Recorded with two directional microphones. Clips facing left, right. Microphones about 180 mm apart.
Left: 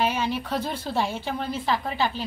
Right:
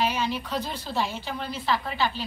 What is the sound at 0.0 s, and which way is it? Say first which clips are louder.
A woman's voice: left 2 dB; 55° left (ahead or behind).